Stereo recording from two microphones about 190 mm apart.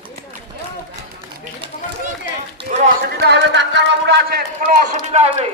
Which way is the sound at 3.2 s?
65° right (ahead or behind).